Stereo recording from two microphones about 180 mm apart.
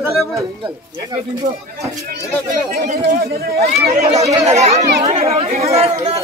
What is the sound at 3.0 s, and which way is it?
Speech, 55° right (ahead or behind).